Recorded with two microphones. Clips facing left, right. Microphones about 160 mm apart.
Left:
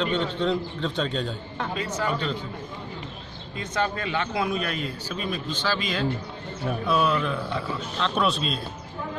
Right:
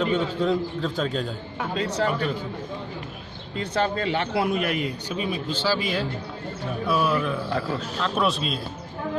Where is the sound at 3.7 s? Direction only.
30° right (ahead or behind); by 8.5 s centre (ahead or behind).